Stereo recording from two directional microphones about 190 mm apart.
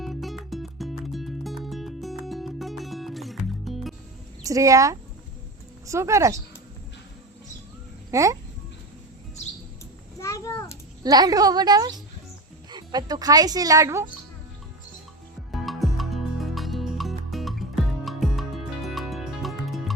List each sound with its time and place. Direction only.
0.0 s music: centre (ahead or behind)
4.4 s speech: 15° right (ahead or behind)
8.1 s speech: 15° right (ahead or behind)
10.2 s a sound: 15° left (ahead or behind)
11.0 s speech: 20° right (ahead or behind)
15.5 s music: centre (ahead or behind)